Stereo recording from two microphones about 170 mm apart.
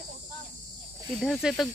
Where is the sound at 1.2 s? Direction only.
Centre (ahead or behind).